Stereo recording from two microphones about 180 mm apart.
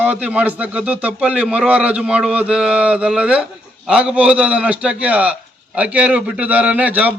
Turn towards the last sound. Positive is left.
turn(degrees=-10)  # may be behind; listen again after turning